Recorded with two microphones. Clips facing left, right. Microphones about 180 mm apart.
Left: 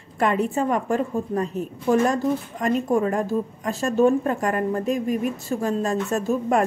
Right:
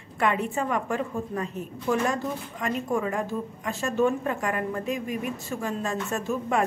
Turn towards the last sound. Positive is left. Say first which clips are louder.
# left 5 dB
turn(degrees=40)  # may be behind; listen again after turning